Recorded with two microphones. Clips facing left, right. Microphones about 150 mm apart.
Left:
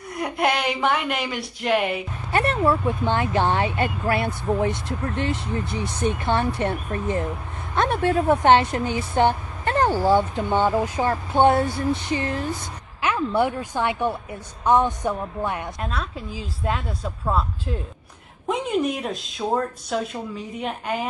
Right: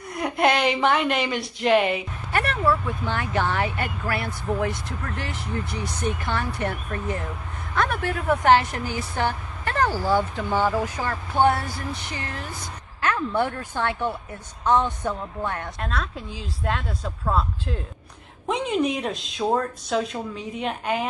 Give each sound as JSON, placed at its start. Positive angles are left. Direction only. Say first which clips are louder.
{"t": 0.2, "sound": "speech", "louder": "right 2 dB", "side_deg": 5}
{"t": 2.3, "sound": "a woman's voice", "louder": "left 2 dB", "side_deg": 25}